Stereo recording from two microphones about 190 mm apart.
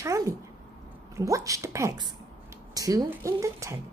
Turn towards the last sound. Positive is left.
turn(degrees=-15)  # may be behind; listen again after turning